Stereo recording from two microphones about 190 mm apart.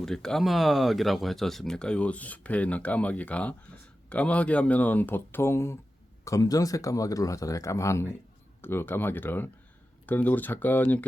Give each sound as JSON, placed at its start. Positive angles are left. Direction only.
{"t": 0.0, "sound": "speech", "side_deg": 5}